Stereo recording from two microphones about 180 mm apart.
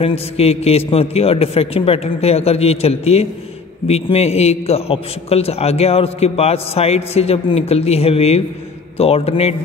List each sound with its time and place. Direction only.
0.0 s a man's voice: 35° left (ahead or behind)